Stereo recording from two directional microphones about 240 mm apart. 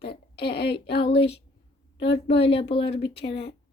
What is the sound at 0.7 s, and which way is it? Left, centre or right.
Speech, left.